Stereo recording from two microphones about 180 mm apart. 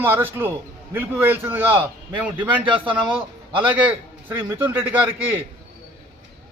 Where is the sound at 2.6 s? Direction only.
30° right (ahead or behind).